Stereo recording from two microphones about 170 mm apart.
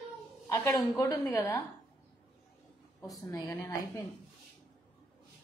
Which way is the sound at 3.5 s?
15° left (ahead or behind).